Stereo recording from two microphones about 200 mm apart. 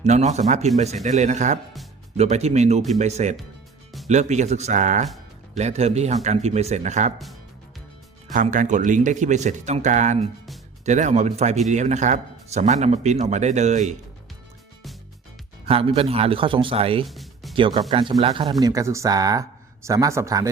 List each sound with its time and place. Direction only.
0.0 s speech: 35° right (ahead or behind)
8.3 s speech: 40° right (ahead or behind)
15.6 s speech: 30° right (ahead or behind)
17.1 s music: centre (ahead or behind)
17.5 s speech: 25° right (ahead or behind)
18.6 s speech: 15° right (ahead or behind)